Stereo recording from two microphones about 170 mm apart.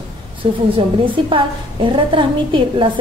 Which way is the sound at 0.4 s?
35° right (ahead or behind).